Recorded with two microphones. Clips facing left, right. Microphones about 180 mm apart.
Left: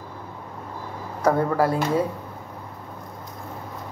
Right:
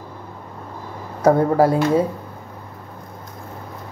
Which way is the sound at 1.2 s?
25° right (ahead or behind).